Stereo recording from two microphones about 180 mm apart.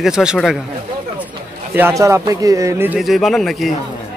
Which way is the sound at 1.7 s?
15° right (ahead or behind).